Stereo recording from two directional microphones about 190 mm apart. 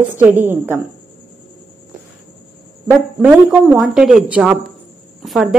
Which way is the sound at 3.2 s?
Centre (ahead or behind).